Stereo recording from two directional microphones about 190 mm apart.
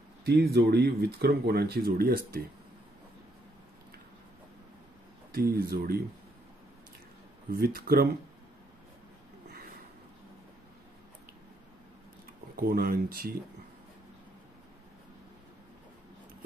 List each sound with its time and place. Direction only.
0.2 s speech: 60° right (ahead or behind)
5.3 s speech: 50° right (ahead or behind)
7.5 s speech: 50° right (ahead or behind)
12.6 s speech: 50° right (ahead or behind)